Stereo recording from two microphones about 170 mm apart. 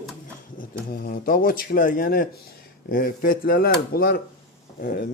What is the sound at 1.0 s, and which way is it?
A man's voice, 55° left (ahead or behind).